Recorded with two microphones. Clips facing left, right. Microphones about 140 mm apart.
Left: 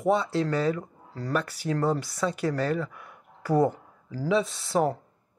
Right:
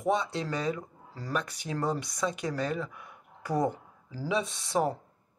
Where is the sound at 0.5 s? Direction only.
15° right (ahead or behind).